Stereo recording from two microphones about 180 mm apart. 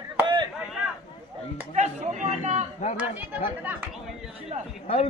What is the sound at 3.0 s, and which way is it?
Speech, 10° right (ahead or behind).